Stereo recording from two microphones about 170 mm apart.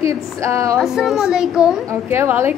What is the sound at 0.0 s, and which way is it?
Speech, 15° right (ahead or behind).